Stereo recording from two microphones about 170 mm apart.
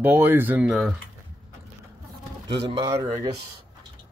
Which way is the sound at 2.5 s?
30° right (ahead or behind).